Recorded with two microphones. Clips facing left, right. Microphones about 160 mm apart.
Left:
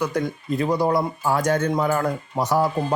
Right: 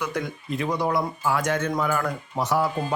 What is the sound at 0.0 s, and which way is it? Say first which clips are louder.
Speech: left 5 dB; 35° left (ahead or behind).